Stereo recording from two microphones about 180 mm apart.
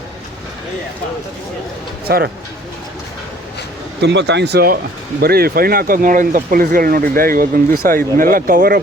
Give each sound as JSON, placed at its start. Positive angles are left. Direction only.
{"t": 2.0, "sound": "speech", "side_deg": -60}
{"t": 4.0, "sound": "speech", "side_deg": -75}